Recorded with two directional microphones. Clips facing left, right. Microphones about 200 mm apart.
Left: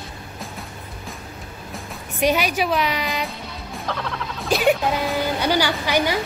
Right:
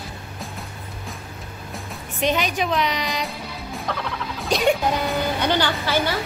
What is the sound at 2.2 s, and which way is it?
A woman's voice, 10° left (ahead or behind).